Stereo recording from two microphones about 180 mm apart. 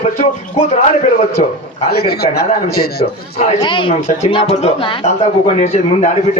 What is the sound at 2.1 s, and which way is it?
Speech, 60° left (ahead or behind).